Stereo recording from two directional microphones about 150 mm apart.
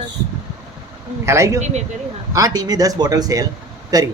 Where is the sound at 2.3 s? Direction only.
25° right (ahead or behind).